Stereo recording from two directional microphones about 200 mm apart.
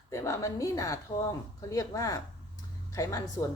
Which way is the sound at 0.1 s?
15° left (ahead or behind).